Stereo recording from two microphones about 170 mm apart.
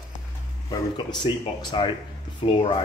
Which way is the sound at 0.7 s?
25° left (ahead or behind).